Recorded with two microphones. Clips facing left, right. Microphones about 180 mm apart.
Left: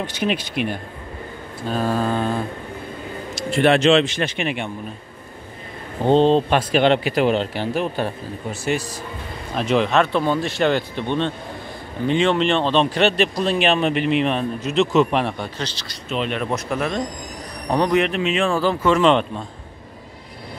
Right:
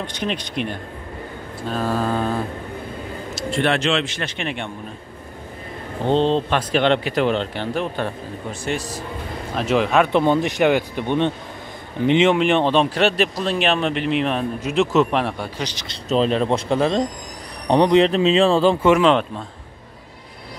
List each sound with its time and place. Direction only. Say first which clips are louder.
0.0 s a man's voice: left 3 dB; 5° left (ahead or behind)
3.6 s speech: left 7 dB; 15° left (ahead or behind)
6.0 s a man's voice: left 3 dB; 10° left (ahead or behind); by 10.0 s 5° right (ahead or behind)
10.0 s a man's voice: right 3 dB; 20° right (ahead or behind)
16.1 s speech: right 5 dB; 35° right (ahead or behind)
18.9 s a man's voice: even; centre (ahead or behind)